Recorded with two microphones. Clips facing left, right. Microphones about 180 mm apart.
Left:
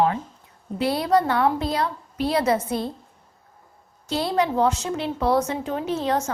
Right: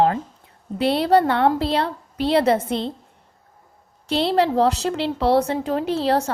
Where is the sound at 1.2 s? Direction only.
65° right (ahead or behind).